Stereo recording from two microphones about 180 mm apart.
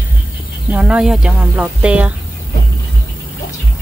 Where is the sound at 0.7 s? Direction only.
5° right (ahead or behind).